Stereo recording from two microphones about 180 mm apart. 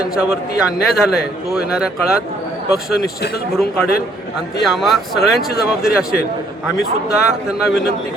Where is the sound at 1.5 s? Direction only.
5° right (ahead or behind).